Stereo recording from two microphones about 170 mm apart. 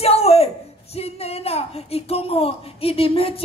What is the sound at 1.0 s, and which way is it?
Speech, 35° left (ahead or behind).